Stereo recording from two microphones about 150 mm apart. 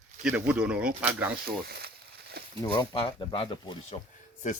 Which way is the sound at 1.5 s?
90° right.